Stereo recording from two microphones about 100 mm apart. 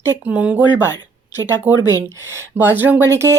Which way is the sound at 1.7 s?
20° right (ahead or behind).